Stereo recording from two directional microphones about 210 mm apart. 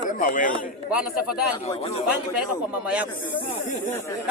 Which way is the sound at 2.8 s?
5° right (ahead or behind).